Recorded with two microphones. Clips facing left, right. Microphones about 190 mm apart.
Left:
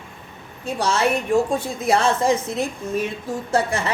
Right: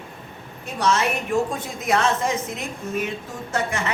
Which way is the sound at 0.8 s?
30° left (ahead or behind).